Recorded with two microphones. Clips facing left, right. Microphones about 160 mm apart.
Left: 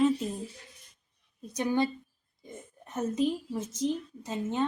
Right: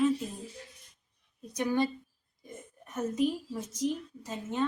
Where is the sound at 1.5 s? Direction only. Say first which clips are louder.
Left 1 dB; 25° left (ahead or behind).